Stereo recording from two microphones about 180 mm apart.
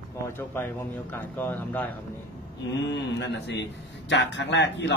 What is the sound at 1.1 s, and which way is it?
Speech, 10° left (ahead or behind).